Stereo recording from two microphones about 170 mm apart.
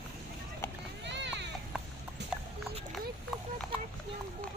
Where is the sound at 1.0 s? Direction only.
90° right.